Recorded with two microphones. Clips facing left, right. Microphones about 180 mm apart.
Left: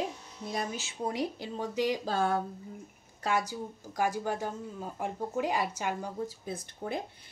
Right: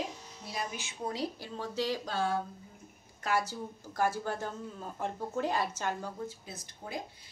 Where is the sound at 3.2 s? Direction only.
20° left (ahead or behind).